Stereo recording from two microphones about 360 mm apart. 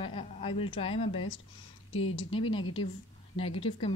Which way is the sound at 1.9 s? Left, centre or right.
Left.